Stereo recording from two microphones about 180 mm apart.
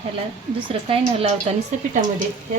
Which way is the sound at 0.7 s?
30° right (ahead or behind).